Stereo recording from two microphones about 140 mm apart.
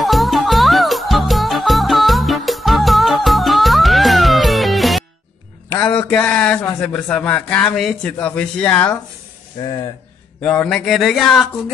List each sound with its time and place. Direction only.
0.0 s music: centre (ahead or behind)
5.9 s a man's voice: 10° left (ahead or behind)
9.6 s speech: 30° left (ahead or behind)
10.4 s a sound: 10° left (ahead or behind)